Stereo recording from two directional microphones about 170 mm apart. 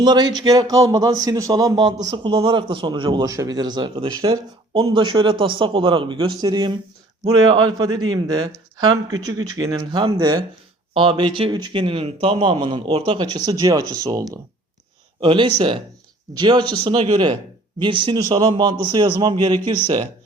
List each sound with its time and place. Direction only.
0.0 s a man's voice: 25° right (ahead or behind)